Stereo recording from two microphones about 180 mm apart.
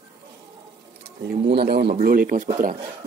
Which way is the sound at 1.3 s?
65° right (ahead or behind).